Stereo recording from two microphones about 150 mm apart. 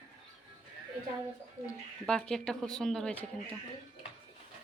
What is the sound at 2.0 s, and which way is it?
Speech, 5° left (ahead or behind).